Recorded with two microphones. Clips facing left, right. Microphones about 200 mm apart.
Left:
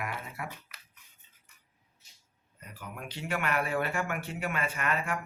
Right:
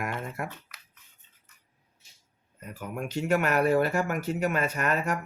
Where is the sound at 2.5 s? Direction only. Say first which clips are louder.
Right 8 dB; 45° right (ahead or behind).